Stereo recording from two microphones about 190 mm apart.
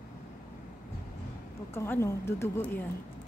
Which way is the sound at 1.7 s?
15° left (ahead or behind).